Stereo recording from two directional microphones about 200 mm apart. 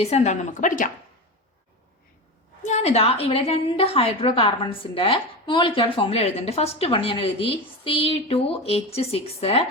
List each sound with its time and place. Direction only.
0.0 s a woman's voice: 35° left (ahead or behind)
2.6 s a woman's voice: 35° left (ahead or behind)